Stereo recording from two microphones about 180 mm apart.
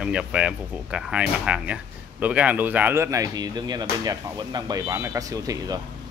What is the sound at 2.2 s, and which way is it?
Arrow, 10° right (ahead or behind).